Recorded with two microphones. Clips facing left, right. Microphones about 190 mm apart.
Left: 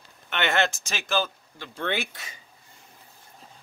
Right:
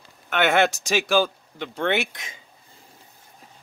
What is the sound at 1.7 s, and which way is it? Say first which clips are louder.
Speech: right 5 dB; 75° right (ahead or behind).